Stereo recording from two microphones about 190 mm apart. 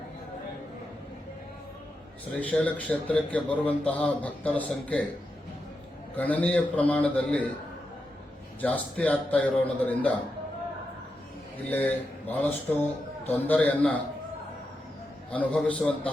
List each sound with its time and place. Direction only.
2.4 s a man's voice: 5° left (ahead or behind)
6.1 s a man's voice: 10° left (ahead or behind)
8.6 s a man's voice: 10° left (ahead or behind)
11.7 s a man's voice: 10° left (ahead or behind)
15.3 s a man's voice: 5° left (ahead or behind)